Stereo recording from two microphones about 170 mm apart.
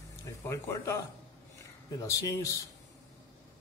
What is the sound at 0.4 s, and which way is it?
Speech, 15° left (ahead or behind).